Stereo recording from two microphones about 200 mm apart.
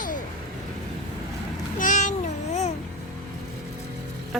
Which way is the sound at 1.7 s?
40° left (ahead or behind).